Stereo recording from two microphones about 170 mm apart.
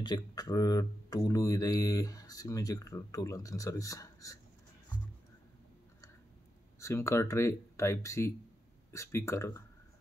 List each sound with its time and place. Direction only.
0.0 s speech: 25° left (ahead or behind)
6.8 s speech: 15° left (ahead or behind)